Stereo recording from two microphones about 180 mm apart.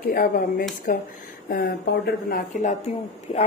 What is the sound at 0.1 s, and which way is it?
A woman's voice, 55° left (ahead or behind).